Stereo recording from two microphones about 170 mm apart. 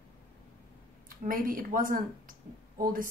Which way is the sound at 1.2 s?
55° right (ahead or behind).